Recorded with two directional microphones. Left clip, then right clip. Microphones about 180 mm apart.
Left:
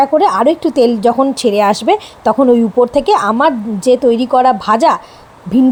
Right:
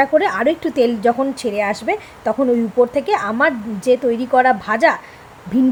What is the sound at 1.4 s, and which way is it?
Speech, 35° left (ahead or behind).